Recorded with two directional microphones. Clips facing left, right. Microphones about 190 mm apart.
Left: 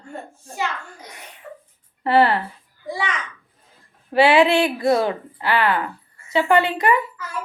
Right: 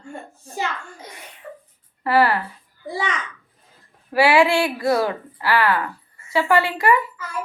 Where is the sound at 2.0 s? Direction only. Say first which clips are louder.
Left 1 dB; 25° left (ahead or behind).